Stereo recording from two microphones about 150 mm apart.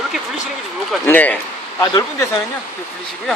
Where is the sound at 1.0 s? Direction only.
10° left (ahead or behind).